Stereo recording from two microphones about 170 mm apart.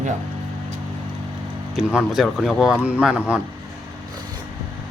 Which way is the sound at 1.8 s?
5° right (ahead or behind).